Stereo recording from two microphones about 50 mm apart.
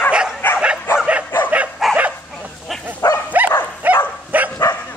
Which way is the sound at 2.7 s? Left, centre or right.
Centre.